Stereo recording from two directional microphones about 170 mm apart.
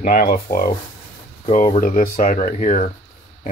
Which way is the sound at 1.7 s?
55° left (ahead or behind).